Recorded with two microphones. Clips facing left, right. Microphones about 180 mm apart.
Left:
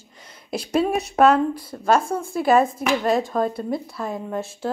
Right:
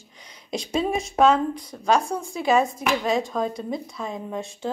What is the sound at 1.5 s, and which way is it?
A woman's voice, 5° left (ahead or behind).